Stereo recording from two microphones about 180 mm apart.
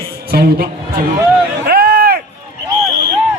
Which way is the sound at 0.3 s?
60° right (ahead or behind).